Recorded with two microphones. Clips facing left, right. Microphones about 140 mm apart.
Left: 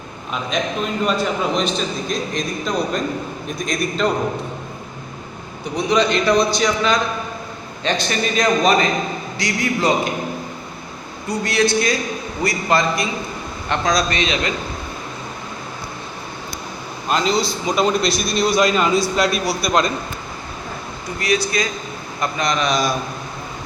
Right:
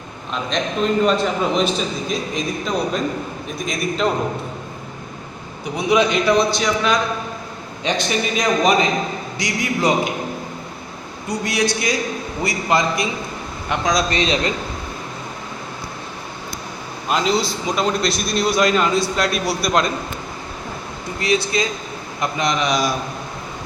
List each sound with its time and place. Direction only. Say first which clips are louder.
1.0 s a man's voice: right 2 dB; centre (ahead or behind)
5.7 s a man's voice: even; 10° right (ahead or behind)
7.9 s a man's voice: even; 15° right (ahead or behind)
11.3 s a man's voice: left 2 dB; 15° right (ahead or behind)
14.1 s a man's voice: right 2 dB; 35° right (ahead or behind)
17.1 s a man's voice: even; 5° right (ahead or behind)
21.2 s a man's voice: right 1 dB; 25° right (ahead or behind)